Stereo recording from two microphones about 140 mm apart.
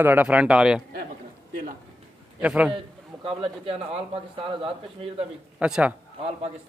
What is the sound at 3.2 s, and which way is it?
Speech, 40° right (ahead or behind).